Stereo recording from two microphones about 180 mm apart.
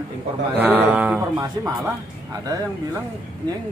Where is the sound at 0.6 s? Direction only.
10° right (ahead or behind).